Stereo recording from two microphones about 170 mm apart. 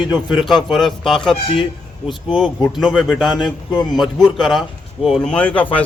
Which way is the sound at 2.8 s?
Centre (ahead or behind).